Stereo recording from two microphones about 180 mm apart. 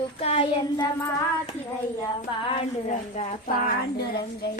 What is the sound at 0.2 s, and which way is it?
Child singing, 30° left (ahead or behind).